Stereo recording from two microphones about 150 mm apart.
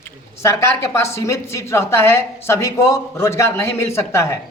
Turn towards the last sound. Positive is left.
turn(degrees=20)  # may be behind; listen again after turning